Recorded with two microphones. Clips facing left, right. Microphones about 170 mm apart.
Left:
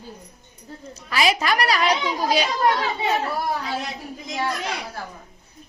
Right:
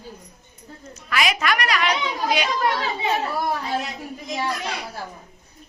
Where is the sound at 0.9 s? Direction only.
30° left (ahead or behind).